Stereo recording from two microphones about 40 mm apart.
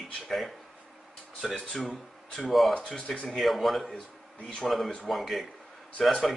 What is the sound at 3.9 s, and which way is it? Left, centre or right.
Speech, left.